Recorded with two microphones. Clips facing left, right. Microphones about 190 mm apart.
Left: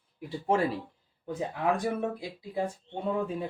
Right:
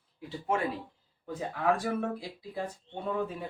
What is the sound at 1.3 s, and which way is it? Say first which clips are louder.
Speech: even; 20° left (ahead or behind).